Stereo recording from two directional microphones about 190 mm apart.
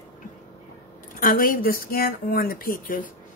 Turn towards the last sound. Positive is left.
turn(degrees=45)  # may be behind; listen again after turning